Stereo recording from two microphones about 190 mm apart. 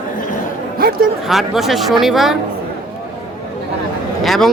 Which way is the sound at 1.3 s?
Centre (ahead or behind).